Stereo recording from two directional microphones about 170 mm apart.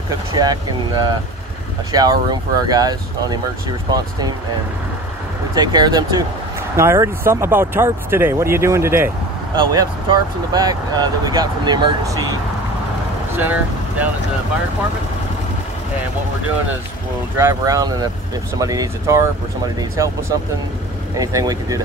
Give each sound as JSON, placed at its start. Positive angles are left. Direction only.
{"t": 0.1, "sound": "speech", "side_deg": -20}
{"t": 5.5, "sound": "speech", "side_deg": -25}
{"t": 9.6, "sound": "speech", "side_deg": -25}
{"t": 13.4, "sound": "speech", "side_deg": -10}
{"t": 17.4, "sound": "speech", "side_deg": -15}